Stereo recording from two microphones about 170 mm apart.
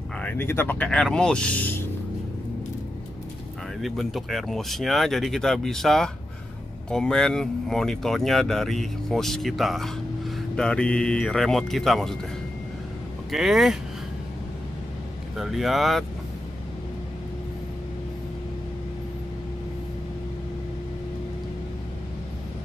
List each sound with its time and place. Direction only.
0.2 s speech: 10° left (ahead or behind)
3.8 s speech: centre (ahead or behind)
13.3 s speech: centre (ahead or behind)
15.3 s speech: centre (ahead or behind)